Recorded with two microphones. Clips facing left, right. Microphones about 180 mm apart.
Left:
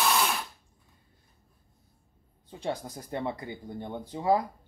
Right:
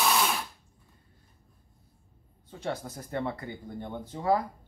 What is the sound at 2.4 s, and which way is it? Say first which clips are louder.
Speech: left 1 dB; 15° left (ahead or behind).